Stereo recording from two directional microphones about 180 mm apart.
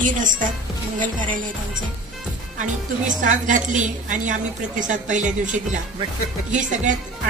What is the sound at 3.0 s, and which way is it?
Speech, 45° right (ahead or behind).